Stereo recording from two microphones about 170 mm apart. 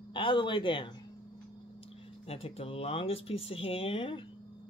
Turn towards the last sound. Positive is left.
turn(degrees=30)  # may be behind; listen again after turning